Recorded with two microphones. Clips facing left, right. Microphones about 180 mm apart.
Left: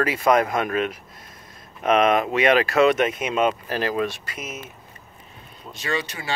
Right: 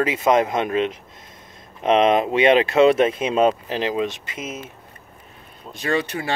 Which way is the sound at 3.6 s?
20° right (ahead or behind).